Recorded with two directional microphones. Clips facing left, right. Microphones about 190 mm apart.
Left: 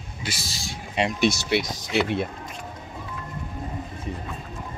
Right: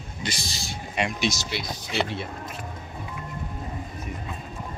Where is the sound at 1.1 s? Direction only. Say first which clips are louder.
Left 6 dB; 60° left (ahead or behind).